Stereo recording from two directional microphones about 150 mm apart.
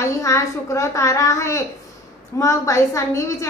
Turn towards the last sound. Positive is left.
turn(degrees=20)  # may be behind; listen again after turning